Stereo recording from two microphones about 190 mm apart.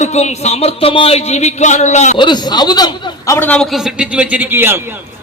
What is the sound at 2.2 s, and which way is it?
A man's voice, 25° left (ahead or behind).